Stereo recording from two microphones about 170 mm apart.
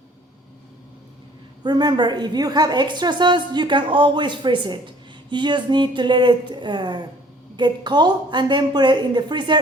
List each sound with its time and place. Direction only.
1.6 s a woman's voice: 25° right (ahead or behind)